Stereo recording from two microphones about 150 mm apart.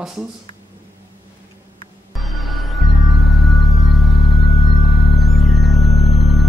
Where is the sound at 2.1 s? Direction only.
Centre (ahead or behind).